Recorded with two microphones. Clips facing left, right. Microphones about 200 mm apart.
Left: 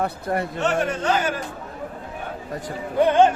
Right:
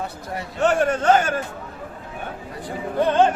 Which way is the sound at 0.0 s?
55° left (ahead or behind).